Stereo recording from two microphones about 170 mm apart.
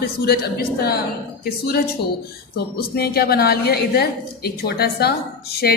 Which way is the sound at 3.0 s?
65° left (ahead or behind).